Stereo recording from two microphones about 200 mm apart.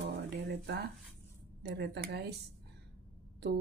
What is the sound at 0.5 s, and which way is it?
Speech, 60° right (ahead or behind).